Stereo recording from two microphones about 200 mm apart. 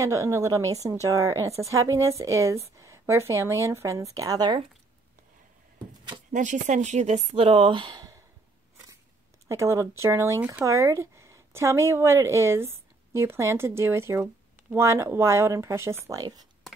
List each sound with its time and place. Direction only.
0.0 s speech: 15° right (ahead or behind)
6.3 s speech: 40° right (ahead or behind); by 8.2 s 20° right (ahead or behind)
9.5 s speech: 15° right (ahead or behind)